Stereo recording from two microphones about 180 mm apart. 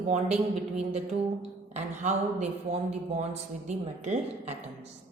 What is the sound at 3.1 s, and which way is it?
Music, 40° right (ahead or behind).